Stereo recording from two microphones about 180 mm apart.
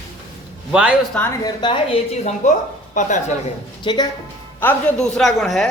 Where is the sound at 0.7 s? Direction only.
5° right (ahead or behind).